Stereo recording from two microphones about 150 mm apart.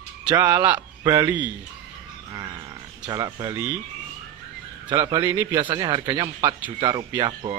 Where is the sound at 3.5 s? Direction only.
10° right (ahead or behind).